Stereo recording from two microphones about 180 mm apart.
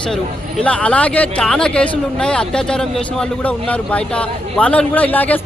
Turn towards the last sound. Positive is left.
turn(degrees=10)  # may be behind; listen again after turning